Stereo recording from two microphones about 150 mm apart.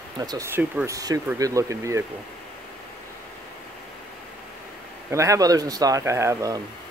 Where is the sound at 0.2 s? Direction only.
20° right (ahead or behind).